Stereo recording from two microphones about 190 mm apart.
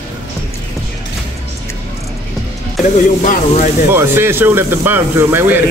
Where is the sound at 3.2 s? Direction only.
40° left (ahead or behind).